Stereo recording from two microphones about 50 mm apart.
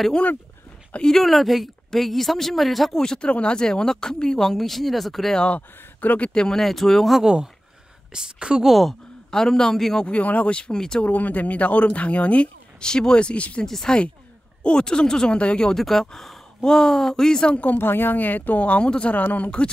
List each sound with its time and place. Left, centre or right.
1.0 s a woman's voice: centre
3.0 s speech: centre
5.5 s speech: left
6.3 s speech: centre
6.6 s a woman's voice: centre
8.1 s a woman's voice: centre
9.3 s speech: centre
10.0 s speech: left
11.1 s speech: left
12.8 s speech: centre
13.7 s speech: centre
17.7 s speech: left
19.1 s speech: left